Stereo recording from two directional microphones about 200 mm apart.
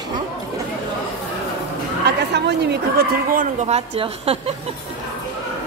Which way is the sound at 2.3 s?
55° right (ahead or behind).